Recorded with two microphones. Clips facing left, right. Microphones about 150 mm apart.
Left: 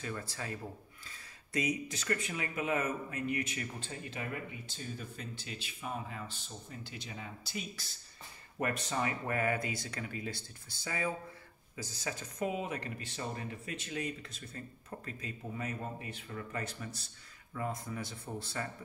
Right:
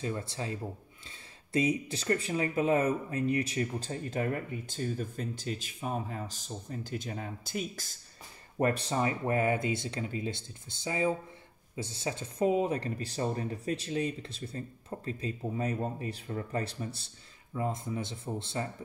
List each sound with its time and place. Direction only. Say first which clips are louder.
0.0 s speech: right 5 dB; 25° right (ahead or behind); by 8.0 s 45° right (ahead or behind)
8.5 s speech: right 6 dB; 30° right (ahead or behind)